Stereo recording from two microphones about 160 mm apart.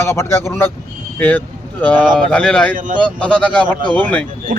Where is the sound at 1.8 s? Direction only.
10° left (ahead or behind).